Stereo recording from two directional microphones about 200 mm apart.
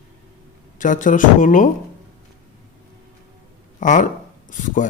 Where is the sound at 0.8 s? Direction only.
40° left (ahead or behind).